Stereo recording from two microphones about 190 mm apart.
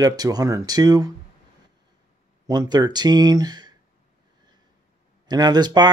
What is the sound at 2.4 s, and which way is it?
Speech, 20° right (ahead or behind).